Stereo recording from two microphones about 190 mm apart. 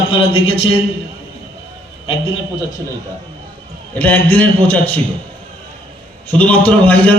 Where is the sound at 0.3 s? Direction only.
30° left (ahead or behind).